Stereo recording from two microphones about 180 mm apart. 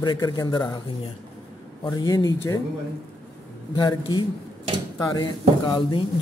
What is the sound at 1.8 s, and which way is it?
Speech, 20° left (ahead or behind).